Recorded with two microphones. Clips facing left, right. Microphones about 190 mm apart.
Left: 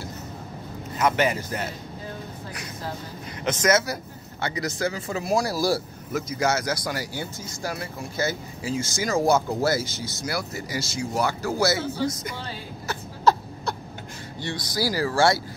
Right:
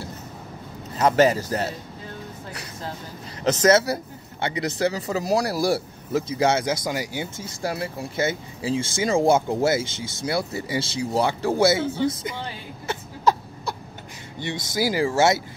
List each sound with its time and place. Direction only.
0.9 s a man's voice: 40° right (ahead or behind)
3.4 s a man's voice: 35° right (ahead or behind)
7.3 s speech: 30° right (ahead or behind)
11.1 s a sound: 25° right (ahead or behind)
14.4 s speech: 20° right (ahead or behind)